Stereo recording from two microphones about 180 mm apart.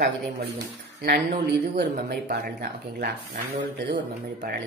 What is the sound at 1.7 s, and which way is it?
Speech, 60° right (ahead or behind).